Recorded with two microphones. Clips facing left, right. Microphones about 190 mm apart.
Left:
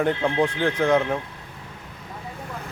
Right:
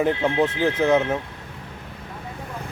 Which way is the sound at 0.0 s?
5° right (ahead or behind).